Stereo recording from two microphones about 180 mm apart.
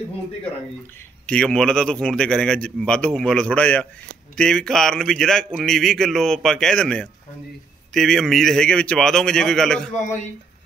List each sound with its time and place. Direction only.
1.2 s a man's voice: 5° left (ahead or behind)